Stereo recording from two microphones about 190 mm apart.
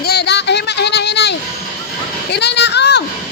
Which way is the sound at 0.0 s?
60° left (ahead or behind).